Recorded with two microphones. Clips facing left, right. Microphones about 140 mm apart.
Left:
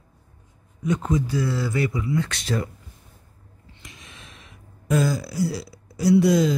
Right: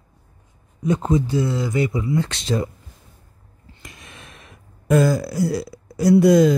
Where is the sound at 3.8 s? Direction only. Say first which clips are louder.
Right 4 dB; 55° right (ahead or behind).